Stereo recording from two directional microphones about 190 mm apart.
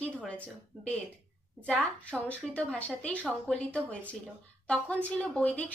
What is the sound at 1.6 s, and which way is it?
A woman's voice, 5° left (ahead or behind).